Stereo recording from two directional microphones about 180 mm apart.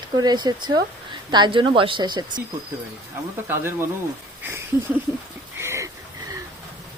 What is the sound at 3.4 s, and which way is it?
Speech, 15° right (ahead or behind).